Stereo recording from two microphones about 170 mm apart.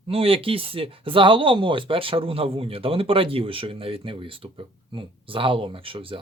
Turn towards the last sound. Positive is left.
turn(degrees=-30)  # may be behind; listen again after turning